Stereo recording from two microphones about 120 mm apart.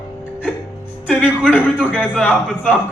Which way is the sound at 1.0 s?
10° left (ahead or behind).